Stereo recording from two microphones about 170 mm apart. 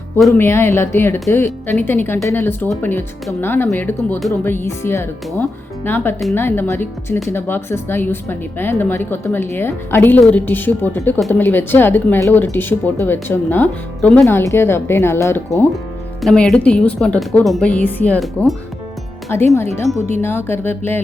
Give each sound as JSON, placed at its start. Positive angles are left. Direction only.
{"t": 0.3, "sound": "speech", "side_deg": 15}
{"t": 16.2, "sound": "speech", "side_deg": 5}
{"t": 19.3, "sound": "speech", "side_deg": 15}